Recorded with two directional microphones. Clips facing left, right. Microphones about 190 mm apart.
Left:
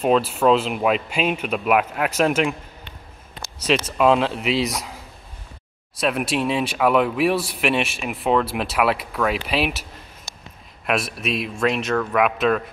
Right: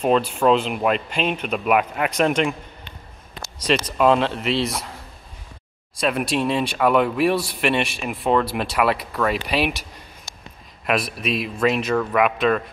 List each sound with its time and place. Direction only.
0.0 s speech: 5° left (ahead or behind)
3.5 s speech: 5° left (ahead or behind)
11.1 s speech: centre (ahead or behind)